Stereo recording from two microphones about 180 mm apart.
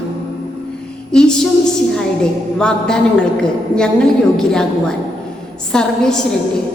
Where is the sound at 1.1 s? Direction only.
5° left (ahead or behind).